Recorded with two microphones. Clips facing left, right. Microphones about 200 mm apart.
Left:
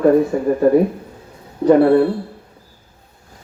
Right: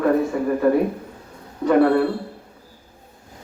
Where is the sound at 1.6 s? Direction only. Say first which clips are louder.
Left 5 dB; 30° left (ahead or behind).